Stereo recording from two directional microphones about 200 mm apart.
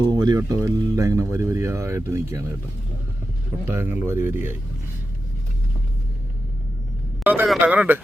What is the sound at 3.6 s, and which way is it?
Speech, 10° right (ahead or behind).